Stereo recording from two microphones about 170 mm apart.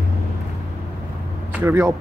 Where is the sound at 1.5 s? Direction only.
15° right (ahead or behind).